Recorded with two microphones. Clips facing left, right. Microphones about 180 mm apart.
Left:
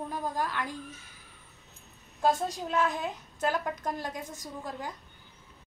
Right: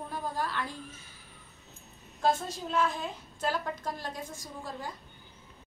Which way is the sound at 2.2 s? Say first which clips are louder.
Left 2 dB; 15° left (ahead or behind).